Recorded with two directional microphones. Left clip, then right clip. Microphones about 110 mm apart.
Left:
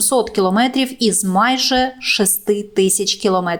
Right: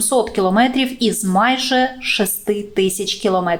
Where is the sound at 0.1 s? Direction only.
45° left (ahead or behind).